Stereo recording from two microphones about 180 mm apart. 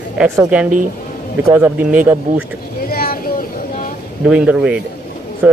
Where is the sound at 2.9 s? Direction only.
55° left (ahead or behind).